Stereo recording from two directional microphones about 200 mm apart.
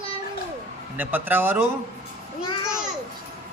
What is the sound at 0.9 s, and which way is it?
Speech, 10° right (ahead or behind).